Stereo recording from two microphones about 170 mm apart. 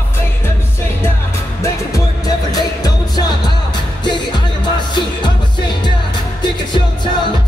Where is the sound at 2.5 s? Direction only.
20° left (ahead or behind).